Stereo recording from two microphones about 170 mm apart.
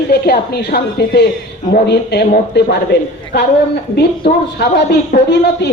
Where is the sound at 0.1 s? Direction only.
70° left (ahead or behind).